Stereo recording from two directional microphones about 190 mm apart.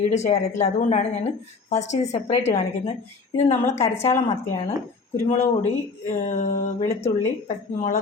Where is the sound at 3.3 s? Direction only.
15° left (ahead or behind).